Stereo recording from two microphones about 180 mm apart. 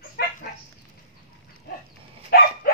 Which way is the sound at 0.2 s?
60° left (ahead or behind).